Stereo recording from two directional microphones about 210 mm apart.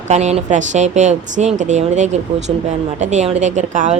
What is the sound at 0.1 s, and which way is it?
A woman's voice, 35° right (ahead or behind).